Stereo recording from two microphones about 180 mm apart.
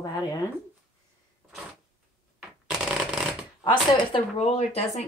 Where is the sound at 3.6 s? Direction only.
30° left (ahead or behind).